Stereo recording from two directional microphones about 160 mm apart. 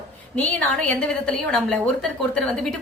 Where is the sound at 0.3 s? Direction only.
10° left (ahead or behind).